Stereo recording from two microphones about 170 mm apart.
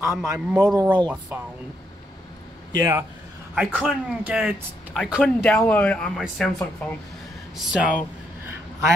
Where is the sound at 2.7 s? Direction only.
20° right (ahead or behind).